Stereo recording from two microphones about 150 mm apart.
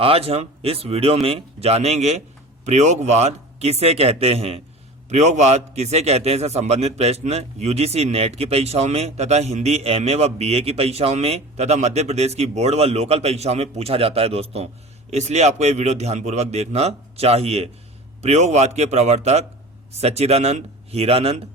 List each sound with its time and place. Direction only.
0.0 s a man's voice: 40° right (ahead or behind)